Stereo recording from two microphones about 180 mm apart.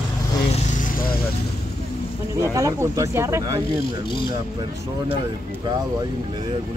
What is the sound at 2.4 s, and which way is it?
Speech, 20° right (ahead or behind).